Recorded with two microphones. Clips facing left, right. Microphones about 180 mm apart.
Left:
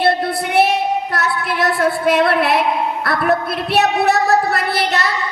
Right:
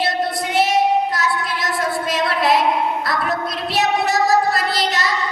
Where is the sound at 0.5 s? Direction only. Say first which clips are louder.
Even; 60° left (ahead or behind).